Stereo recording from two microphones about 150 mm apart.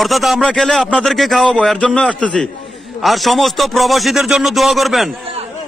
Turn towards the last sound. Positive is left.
turn(degrees=0)  # may be behind; listen again after turning